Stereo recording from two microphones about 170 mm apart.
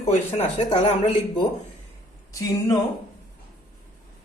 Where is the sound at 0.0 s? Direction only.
40° left (ahead or behind).